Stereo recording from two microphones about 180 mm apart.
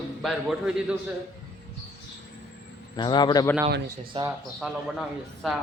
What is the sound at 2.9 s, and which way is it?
Speech, 25° left (ahead or behind).